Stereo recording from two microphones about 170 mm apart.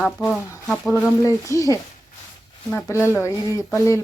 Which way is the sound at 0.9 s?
15° left (ahead or behind).